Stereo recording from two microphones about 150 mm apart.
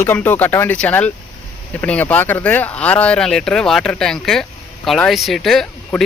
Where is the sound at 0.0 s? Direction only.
15° left (ahead or behind).